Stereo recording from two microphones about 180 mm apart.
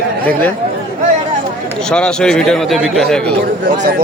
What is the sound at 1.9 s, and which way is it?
Speech, 5° left (ahead or behind).